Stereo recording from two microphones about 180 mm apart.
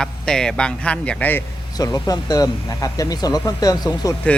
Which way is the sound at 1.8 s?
20° left (ahead or behind).